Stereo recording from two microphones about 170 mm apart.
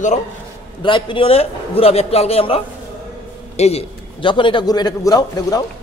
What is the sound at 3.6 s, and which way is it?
A man's voice, 35° left (ahead or behind).